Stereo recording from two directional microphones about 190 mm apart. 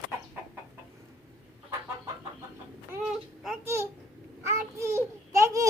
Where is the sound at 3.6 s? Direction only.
15° right (ahead or behind).